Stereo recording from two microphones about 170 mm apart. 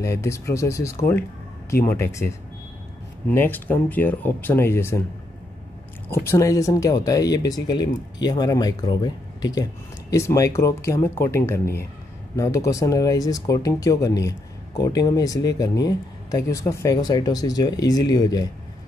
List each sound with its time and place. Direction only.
0.0 s speech: 15° left (ahead or behind)
6.0 s speech: 15° left (ahead or behind)